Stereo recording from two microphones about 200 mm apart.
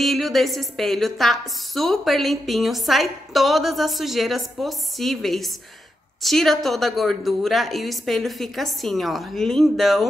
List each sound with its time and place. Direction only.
0.0 s a woman's voice: centre (ahead or behind)